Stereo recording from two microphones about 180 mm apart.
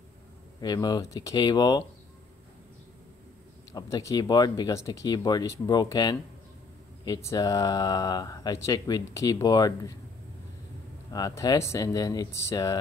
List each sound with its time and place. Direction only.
0.6 s speech: 20° left (ahead or behind)
3.7 s speech: 20° left (ahead or behind)
11.1 s speech: 20° left (ahead or behind)